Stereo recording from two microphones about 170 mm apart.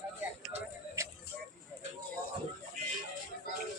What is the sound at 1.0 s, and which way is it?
Music, 15° right (ahead or behind).